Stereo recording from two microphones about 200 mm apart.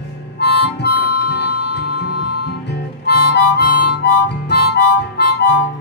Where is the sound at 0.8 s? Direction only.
55° left (ahead or behind).